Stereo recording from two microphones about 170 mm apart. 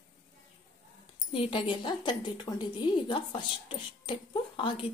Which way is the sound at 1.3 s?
30° left (ahead or behind).